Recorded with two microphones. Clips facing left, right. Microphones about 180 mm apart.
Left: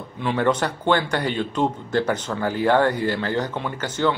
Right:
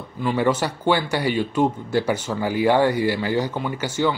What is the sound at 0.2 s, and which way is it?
A man's voice, 5° right (ahead or behind).